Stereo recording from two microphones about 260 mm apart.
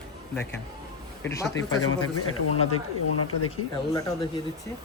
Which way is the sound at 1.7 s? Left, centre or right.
Left.